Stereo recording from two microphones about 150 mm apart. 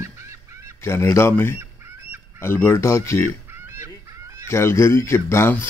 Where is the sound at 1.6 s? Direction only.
15° right (ahead or behind).